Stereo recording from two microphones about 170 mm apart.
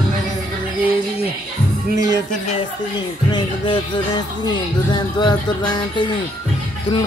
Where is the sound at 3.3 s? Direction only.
25° left (ahead or behind).